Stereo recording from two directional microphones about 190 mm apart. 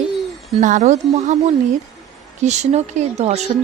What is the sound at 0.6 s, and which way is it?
Speech, 40° right (ahead or behind).